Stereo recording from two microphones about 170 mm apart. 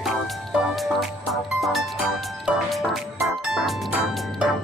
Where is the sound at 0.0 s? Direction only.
Centre (ahead or behind).